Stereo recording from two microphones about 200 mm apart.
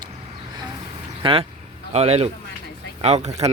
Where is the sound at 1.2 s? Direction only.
30° right (ahead or behind).